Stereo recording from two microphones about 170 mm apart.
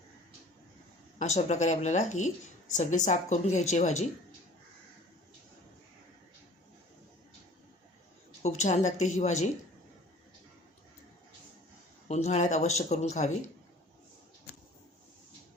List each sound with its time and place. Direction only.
1.2 s speech: 45° left (ahead or behind)
8.4 s speech: 40° left (ahead or behind)
12.0 s speech: 40° left (ahead or behind)